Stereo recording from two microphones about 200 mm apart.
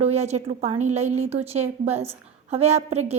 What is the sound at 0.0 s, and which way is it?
A woman's voice, 30° right (ahead or behind).